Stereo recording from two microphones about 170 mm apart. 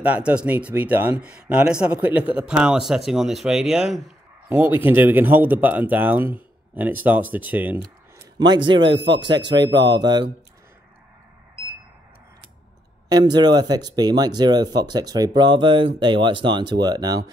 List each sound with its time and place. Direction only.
0.0 s speech: 10° right (ahead or behind)
8.4 s speech: 25° right (ahead or behind)
8.9 s speech: 90° right
9.5 s speech: 25° right (ahead or behind)
13.1 s speech: 25° right (ahead or behind)